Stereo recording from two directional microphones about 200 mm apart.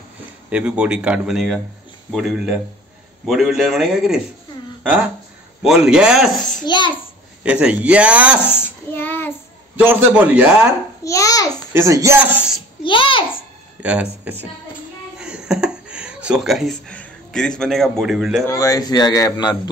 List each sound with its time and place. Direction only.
0.5 s a man's voice: 5° right (ahead or behind)
5.6 s a man's voice: 5° right (ahead or behind)
6.6 s speech: 25° left (ahead or behind)
7.4 s a man's voice: 5° right (ahead or behind)
8.9 s child singing: 10° left (ahead or behind)
9.8 s a man's voice: 10° right (ahead or behind)
11.1 s babbling: 15° left (ahead or behind)
11.7 s a man's voice: 15° right (ahead or behind)
12.8 s a sound: 25° left (ahead or behind)
13.8 s a man's voice: 5° right (ahead or behind)
15.1 s a sound: 5° right (ahead or behind)
18.5 s speech: 15° left (ahead or behind)